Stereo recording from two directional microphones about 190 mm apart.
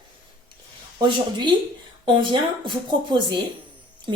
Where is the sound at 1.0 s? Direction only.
25° right (ahead or behind).